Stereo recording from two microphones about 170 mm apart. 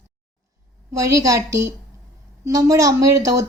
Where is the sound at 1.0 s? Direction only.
20° right (ahead or behind).